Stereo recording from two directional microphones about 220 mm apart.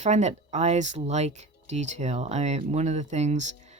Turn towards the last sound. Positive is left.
turn(degrees=-30)  # may be behind; listen again after turning